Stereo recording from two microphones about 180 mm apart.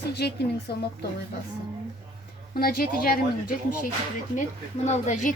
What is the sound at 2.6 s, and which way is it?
Speech, 55° left (ahead or behind).